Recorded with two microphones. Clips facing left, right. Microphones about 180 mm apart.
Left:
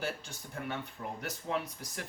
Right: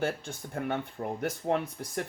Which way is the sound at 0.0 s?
50° right (ahead or behind).